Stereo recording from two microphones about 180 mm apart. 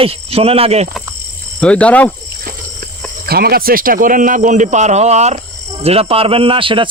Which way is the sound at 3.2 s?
60° right (ahead or behind).